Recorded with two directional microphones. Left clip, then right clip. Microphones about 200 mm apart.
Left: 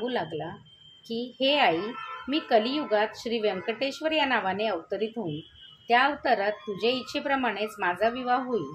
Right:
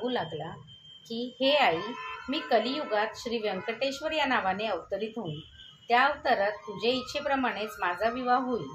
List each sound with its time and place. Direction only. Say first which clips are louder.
0.0 s a woman's voice: left 2 dB; 35° left (ahead or behind)